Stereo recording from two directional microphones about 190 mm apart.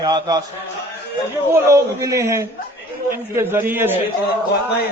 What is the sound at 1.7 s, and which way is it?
A man's voice, 15° right (ahead or behind).